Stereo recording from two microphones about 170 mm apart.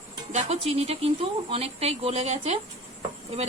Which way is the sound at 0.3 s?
40° right (ahead or behind).